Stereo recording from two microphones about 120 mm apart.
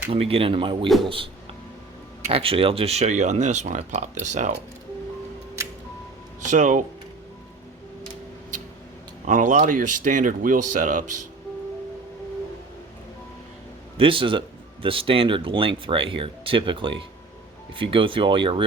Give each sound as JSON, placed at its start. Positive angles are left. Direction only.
{"t": 0.1, "sound": "speech", "side_deg": -55}
{"t": 2.3, "sound": "speech", "side_deg": -50}
{"t": 6.5, "sound": "speech", "side_deg": -90}
{"t": 9.2, "sound": "speech", "side_deg": -90}
{"t": 13.9, "sound": "speech", "side_deg": -45}